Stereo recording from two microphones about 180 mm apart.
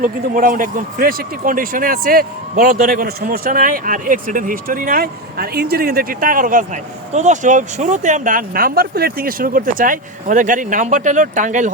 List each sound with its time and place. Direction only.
0.3 s a man's voice: 50° right (ahead or behind)